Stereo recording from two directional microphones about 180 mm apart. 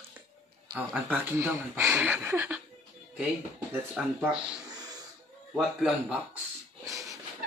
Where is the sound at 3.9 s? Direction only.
5° right (ahead or behind).